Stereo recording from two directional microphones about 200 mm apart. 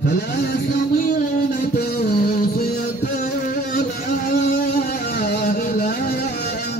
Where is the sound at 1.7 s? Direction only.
50° left (ahead or behind).